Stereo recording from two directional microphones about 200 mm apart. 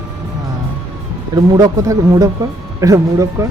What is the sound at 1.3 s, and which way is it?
Speech, 20° right (ahead or behind).